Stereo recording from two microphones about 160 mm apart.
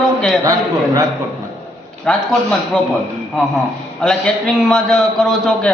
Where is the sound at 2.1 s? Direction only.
5° left (ahead or behind).